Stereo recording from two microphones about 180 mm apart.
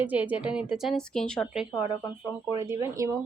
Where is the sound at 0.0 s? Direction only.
10° right (ahead or behind).